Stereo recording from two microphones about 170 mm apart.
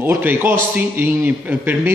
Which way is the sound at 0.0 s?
10° right (ahead or behind).